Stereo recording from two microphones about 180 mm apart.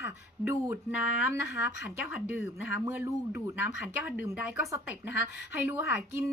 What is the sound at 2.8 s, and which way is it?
Speech, 15° right (ahead or behind).